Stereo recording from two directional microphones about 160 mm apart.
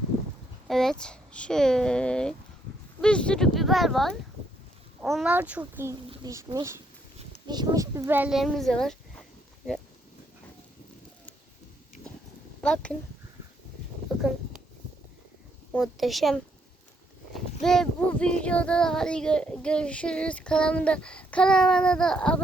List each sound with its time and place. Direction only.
0.7 s speech: centre (ahead or behind)
5.3 s a child's voice: 10° right (ahead or behind)
12.6 s speech: 5° left (ahead or behind)
14.1 s a sound: centre (ahead or behind)
15.7 s speech: centre (ahead or behind)